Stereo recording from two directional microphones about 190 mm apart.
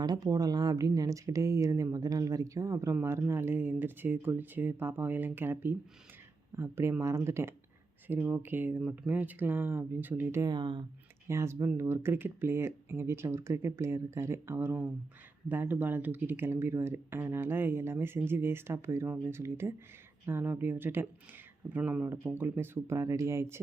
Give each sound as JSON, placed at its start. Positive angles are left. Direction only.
{"t": 0.0, "sound": "speech", "side_deg": -20}
{"t": 11.3, "sound": "speech", "side_deg": -15}